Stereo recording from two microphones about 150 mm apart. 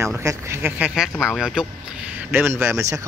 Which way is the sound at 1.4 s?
Centre (ahead or behind).